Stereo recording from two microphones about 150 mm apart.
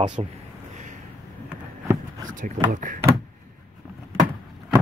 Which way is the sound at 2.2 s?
60° right (ahead or behind).